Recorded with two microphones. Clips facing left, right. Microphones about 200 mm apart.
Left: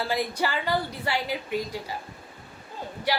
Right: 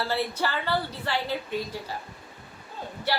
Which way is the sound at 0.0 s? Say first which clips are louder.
Left 1 dB; 15° left (ahead or behind).